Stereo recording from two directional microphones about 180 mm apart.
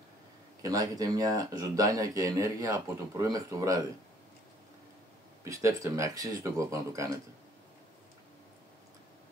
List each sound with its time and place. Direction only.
0.6 s speech: 20° right (ahead or behind)
5.4 s speech: 15° right (ahead or behind)